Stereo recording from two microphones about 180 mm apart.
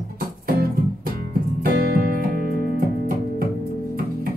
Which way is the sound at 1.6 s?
55° right (ahead or behind).